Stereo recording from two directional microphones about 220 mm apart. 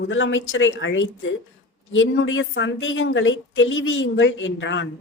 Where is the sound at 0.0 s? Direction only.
60° left (ahead or behind).